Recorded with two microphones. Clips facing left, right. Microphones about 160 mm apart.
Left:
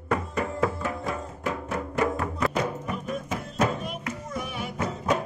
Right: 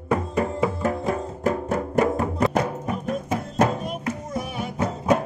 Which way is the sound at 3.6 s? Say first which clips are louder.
Right 4 dB; 35° right (ahead or behind).